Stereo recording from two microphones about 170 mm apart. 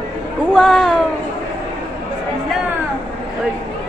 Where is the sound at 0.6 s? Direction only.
Centre (ahead or behind).